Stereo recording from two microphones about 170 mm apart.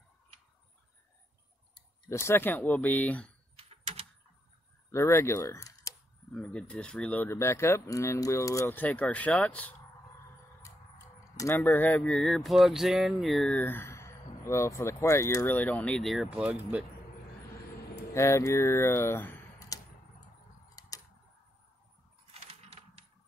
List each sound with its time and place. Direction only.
2.0 s speech: 15° left (ahead or behind)
3.5 s a sound: 35° right (ahead or behind)
4.9 s speech: 15° left (ahead or behind)
6.3 s speech: 5° left (ahead or behind)
11.3 s speech: 15° left (ahead or behind); by 16.8 s 10° right (ahead or behind)
18.1 s speech: 15° left (ahead or behind)
20.8 s a sound: 20° left (ahead or behind)
22.3 s coin: 35° right (ahead or behind)